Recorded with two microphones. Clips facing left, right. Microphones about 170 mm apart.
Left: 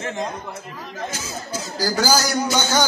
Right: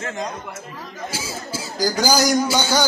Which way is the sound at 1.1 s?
10° right (ahead or behind).